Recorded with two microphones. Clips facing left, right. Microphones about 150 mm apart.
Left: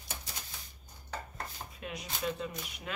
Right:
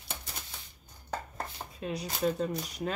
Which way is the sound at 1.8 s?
35° right (ahead or behind).